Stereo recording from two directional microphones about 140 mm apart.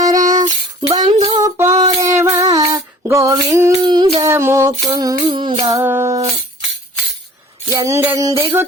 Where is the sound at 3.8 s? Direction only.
35° right (ahead or behind).